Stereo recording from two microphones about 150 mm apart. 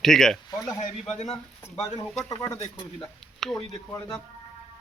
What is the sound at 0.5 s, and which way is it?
Speech, 25° left (ahead or behind).